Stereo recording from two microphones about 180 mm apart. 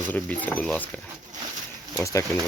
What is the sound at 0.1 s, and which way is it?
Speech, 10° left (ahead or behind).